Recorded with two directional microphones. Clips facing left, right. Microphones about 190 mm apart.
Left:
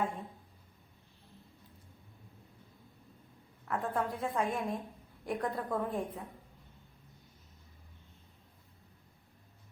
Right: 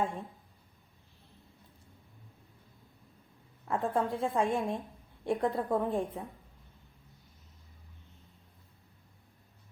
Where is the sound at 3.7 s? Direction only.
25° right (ahead or behind).